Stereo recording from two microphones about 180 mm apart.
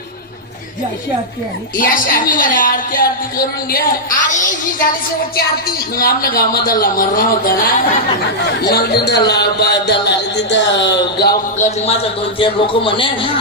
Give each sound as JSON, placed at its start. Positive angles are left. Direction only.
{"t": 1.7, "sound": "a woman's voice", "side_deg": 50}
{"t": 6.0, "sound": "a woman's voice", "side_deg": 55}
{"t": 11.5, "sound": "a man's voice", "side_deg": 40}